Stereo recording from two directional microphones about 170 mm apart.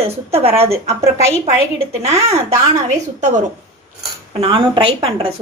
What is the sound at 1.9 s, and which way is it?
Speech, 40° right (ahead or behind).